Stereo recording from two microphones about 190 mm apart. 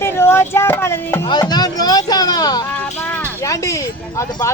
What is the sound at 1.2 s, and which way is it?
Speech, 20° left (ahead or behind).